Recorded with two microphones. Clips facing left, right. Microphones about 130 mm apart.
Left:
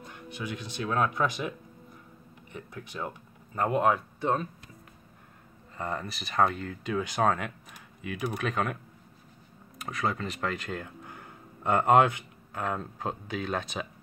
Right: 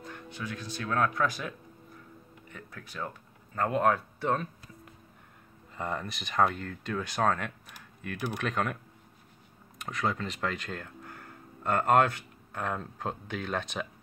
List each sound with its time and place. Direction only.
0.0 s speech: 15° left (ahead or behind)
2.5 s speech: 20° left (ahead or behind)
5.8 s speech: centre (ahead or behind)
9.8 s speech: 5° left (ahead or behind)
12.5 s speech: 5° left (ahead or behind)